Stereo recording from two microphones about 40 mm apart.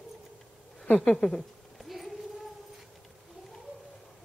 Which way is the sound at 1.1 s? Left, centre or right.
Centre.